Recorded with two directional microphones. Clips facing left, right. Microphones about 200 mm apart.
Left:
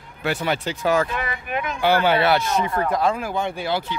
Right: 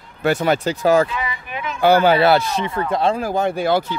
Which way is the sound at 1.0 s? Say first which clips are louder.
Even; 55° left (ahead or behind).